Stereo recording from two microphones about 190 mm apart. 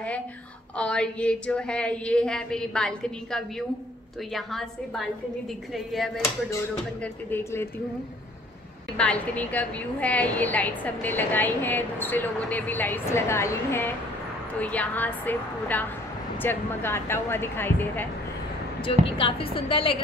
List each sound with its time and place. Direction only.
0.7 s a woman's voice: 5° left (ahead or behind)
7.2 s a woman's voice: 10° left (ahead or behind)
8.9 s a woman's voice: 5° left (ahead or behind)
18.9 s speech: 25° left (ahead or behind)